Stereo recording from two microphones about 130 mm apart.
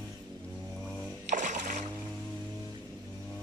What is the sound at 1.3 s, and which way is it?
Music, 75° right (ahead or behind).